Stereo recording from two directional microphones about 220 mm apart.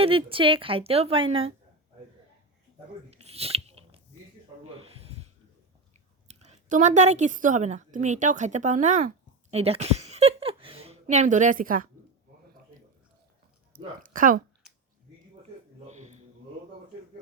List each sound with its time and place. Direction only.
0.0 s a woman's voice: 25° right (ahead or behind)
3.1 s a sound: 30° right (ahead or behind)
6.2 s a woman's voice: 30° right (ahead or behind)
13.7 s speech: 40° right (ahead or behind)